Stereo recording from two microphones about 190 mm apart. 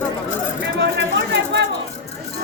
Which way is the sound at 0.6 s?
65° right (ahead or behind).